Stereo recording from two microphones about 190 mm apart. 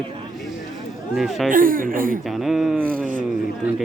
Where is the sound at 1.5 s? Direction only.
45° right (ahead or behind).